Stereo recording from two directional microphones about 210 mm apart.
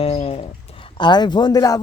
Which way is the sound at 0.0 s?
30° left (ahead or behind).